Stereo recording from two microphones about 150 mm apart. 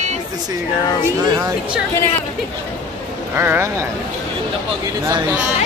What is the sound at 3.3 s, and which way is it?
Speech, 15° right (ahead or behind).